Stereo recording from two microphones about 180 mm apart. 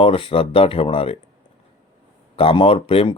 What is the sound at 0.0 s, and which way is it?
Speech, 30° left (ahead or behind).